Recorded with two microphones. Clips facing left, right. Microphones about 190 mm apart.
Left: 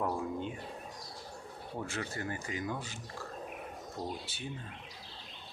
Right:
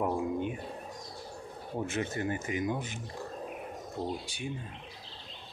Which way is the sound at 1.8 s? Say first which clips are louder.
Right 6 dB; 20° right (ahead or behind).